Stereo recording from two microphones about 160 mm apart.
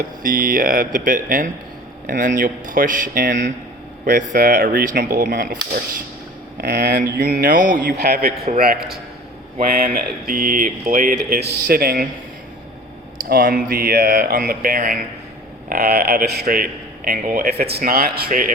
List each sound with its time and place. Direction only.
0.2 s speech: 60° right (ahead or behind)
6.6 s speech: 80° right; by 7.8 s 55° right (ahead or behind)
7.9 s a man's voice: 85° right
8.5 s a man's voice: 65° right (ahead or behind)
13.3 s speech: 65° right (ahead or behind)
15.7 s a man's voice: 75° right (ahead or behind)